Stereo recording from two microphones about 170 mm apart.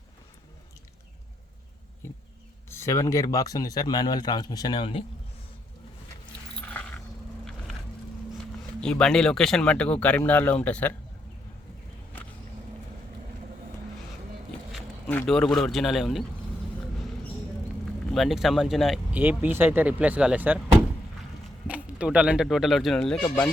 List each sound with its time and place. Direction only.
2.6 s a man's voice: 15° left (ahead or behind); by 5.0 s 30° left (ahead or behind)
6.7 s mechanisms: 10° left (ahead or behind)
8.8 s speech: 5° left (ahead or behind)
15.0 s a sound: 15° left (ahead or behind)
15.3 s a man's voice: 5° left (ahead or behind)
18.1 s speech: centre (ahead or behind)
19.2 s speech: 10° right (ahead or behind)
21.7 s speech: 5° right (ahead or behind)
23.1 s speech: 15° left (ahead or behind)